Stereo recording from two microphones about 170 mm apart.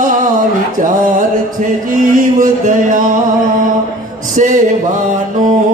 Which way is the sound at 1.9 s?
50° right (ahead or behind).